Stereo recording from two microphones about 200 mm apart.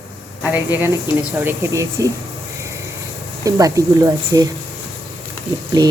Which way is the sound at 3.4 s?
15° right (ahead or behind).